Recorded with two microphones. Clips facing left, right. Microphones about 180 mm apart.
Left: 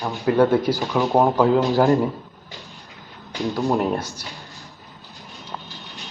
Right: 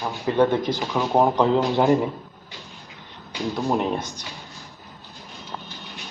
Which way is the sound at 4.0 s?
20° right (ahead or behind).